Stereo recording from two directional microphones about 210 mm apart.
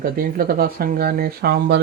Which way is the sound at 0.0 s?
45° right (ahead or behind).